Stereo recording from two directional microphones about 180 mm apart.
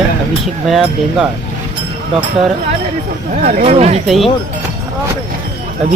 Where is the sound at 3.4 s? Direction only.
45° right (ahead or behind).